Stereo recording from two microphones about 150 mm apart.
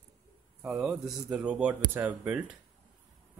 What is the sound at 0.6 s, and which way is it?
Speech, 5° right (ahead or behind).